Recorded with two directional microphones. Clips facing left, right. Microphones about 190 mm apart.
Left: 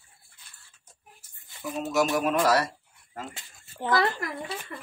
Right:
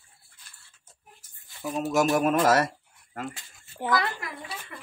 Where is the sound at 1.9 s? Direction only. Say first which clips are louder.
Right 2 dB; 50° right (ahead or behind).